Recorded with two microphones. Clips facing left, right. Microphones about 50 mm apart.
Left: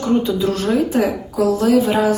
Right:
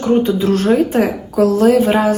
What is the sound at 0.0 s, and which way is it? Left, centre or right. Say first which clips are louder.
A woman's voice: right 3 dB; right.